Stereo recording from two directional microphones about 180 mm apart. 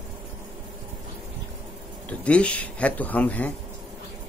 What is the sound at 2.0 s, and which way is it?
Speech, 5° left (ahead or behind).